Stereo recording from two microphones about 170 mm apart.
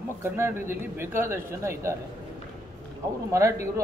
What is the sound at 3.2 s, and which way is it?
Speech, 15° right (ahead or behind).